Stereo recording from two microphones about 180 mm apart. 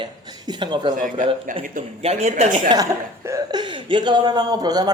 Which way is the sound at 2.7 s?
20° right (ahead or behind).